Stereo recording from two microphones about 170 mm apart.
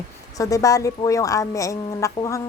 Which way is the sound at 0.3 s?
20° left (ahead or behind).